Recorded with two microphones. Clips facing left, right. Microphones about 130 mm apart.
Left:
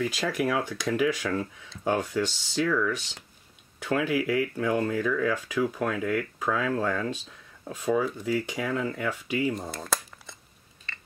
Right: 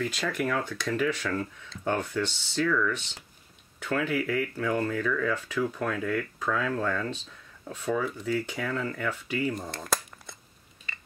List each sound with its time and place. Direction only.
0.0 s speech: 10° left (ahead or behind)
9.5 s crumpling: centre (ahead or behind)